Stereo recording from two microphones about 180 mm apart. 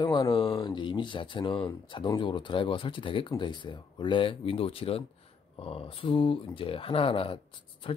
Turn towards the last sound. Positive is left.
turn(degrees=30)  # may be behind; listen again after turning